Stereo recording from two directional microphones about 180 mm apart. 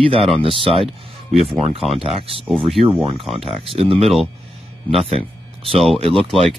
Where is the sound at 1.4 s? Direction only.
Centre (ahead or behind).